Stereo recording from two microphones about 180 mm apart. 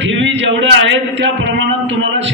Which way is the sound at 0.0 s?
90° right.